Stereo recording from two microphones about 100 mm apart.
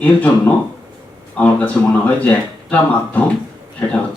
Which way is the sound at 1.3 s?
15° left (ahead or behind).